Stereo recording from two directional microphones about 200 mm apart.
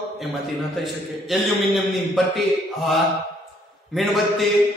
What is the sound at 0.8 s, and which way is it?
A man's voice, centre (ahead or behind).